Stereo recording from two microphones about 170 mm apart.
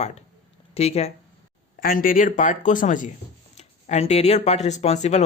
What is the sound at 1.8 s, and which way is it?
Speech, 55° left (ahead or behind).